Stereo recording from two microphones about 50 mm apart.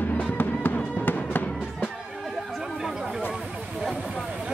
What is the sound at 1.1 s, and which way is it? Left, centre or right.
Music, left.